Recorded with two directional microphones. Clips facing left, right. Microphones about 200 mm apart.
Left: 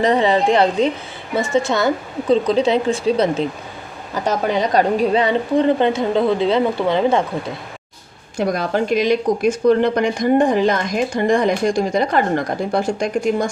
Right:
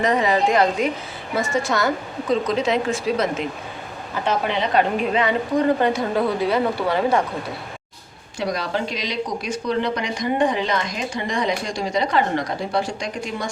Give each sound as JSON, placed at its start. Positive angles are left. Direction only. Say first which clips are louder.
{"t": 0.0, "sound": "speech", "louder": "left 4 dB", "side_deg": 30}
{"t": 4.1, "sound": "a woman's voice", "louder": "left 4 dB", "side_deg": 40}
{"t": 8.4, "sound": "speech", "louder": "left 5 dB", "side_deg": 50}